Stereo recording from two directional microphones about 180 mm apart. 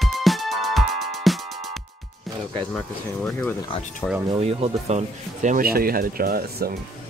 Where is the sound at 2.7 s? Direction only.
5° left (ahead or behind).